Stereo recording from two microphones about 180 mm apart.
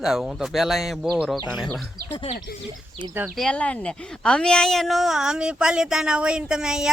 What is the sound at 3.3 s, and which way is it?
A woman's voice, 5° left (ahead or behind).